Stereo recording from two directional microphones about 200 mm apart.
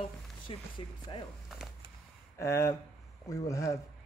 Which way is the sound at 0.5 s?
25° left (ahead or behind).